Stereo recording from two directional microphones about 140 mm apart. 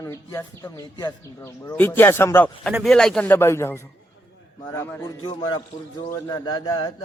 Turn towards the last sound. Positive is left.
turn(degrees=35)  # may be behind; listen again after turning